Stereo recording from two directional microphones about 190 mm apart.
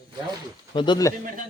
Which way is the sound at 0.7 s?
25° left (ahead or behind).